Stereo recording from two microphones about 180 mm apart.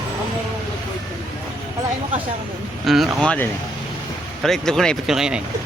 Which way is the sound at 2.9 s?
Centre (ahead or behind).